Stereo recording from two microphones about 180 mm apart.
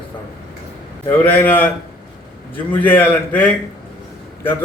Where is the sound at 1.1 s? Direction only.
10° left (ahead or behind).